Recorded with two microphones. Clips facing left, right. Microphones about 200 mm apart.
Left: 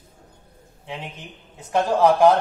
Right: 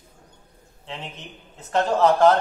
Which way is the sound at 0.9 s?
10° left (ahead or behind).